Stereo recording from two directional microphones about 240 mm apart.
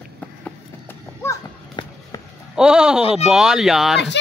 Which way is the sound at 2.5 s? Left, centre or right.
Centre.